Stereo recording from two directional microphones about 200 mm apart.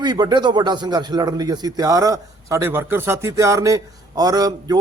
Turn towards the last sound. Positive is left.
turn(degrees=-20)  # may be behind; listen again after turning